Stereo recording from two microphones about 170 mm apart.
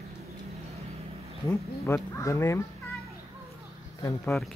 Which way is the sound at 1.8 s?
15° left (ahead or behind).